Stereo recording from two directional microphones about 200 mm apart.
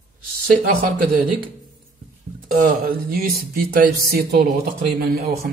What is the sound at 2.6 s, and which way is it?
Speech, 50° right (ahead or behind).